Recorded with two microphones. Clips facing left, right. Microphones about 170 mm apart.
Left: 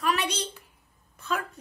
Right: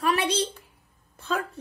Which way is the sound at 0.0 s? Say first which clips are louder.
Right 4 dB; 30° right (ahead or behind).